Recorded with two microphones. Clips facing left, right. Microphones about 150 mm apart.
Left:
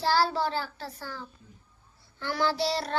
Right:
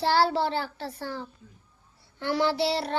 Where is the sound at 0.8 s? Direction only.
25° right (ahead or behind).